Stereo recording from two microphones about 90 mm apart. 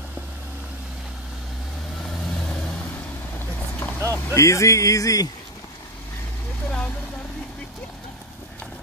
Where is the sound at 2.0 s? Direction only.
5° left (ahead or behind).